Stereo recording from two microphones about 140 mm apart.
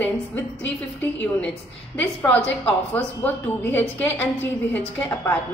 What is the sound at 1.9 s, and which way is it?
A woman's voice, 10° left (ahead or behind).